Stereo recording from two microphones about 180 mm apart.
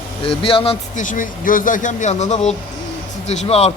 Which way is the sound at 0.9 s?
45° left (ahead or behind).